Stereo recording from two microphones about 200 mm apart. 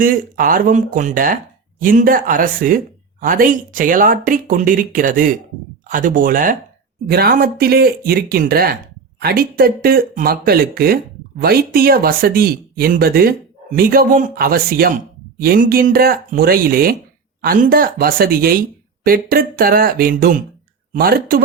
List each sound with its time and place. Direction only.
0.0 s speech: 45° right (ahead or behind)